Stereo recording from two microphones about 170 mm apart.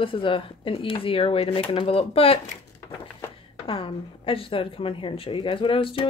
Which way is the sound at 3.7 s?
30° left (ahead or behind).